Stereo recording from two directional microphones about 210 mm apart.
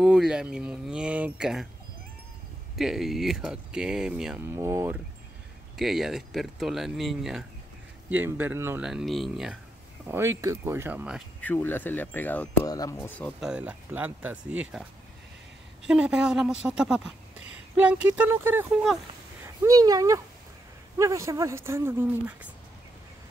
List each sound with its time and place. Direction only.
0.0 s speech: centre (ahead or behind)
2.7 s speech: centre (ahead or behind)
10.0 s speech: 10° right (ahead or behind)
11.4 s speech: 10° left (ahead or behind)
13.4 s speech: 5° right (ahead or behind)